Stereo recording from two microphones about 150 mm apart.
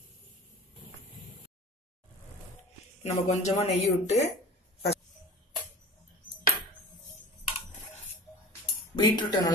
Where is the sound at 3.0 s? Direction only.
45° left (ahead or behind).